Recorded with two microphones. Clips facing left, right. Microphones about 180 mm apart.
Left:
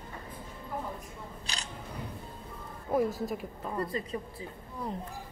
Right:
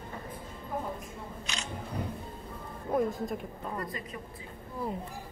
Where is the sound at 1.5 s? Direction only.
35° left (ahead or behind).